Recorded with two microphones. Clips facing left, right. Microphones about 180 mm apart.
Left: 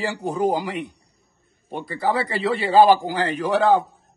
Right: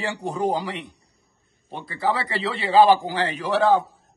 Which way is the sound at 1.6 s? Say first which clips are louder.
Left 5 dB; 15° left (ahead or behind).